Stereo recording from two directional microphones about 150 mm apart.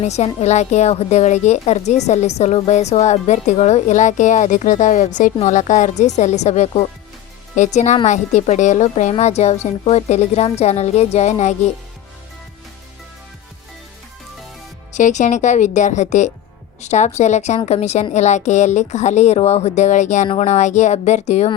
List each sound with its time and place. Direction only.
0.0 s a woman's voice: 45° left (ahead or behind)
14.9 s a woman's voice: 55° left (ahead or behind)
20.2 s a woman's voice: 40° left (ahead or behind)